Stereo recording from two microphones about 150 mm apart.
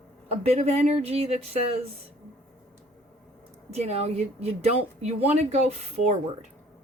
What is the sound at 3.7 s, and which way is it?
Speech, 45° right (ahead or behind).